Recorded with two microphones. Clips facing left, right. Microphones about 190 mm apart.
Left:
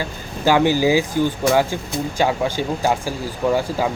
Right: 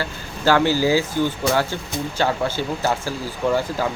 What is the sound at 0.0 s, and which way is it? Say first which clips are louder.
Speech: left 1 dB; 15° left (ahead or behind).